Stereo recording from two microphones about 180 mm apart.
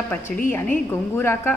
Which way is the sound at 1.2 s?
15° left (ahead or behind).